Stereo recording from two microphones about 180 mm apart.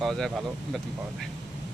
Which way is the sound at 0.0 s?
Centre (ahead or behind).